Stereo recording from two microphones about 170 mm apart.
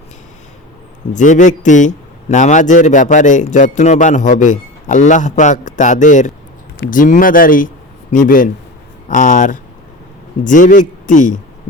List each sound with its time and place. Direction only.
1.1 s speech: 45° left (ahead or behind)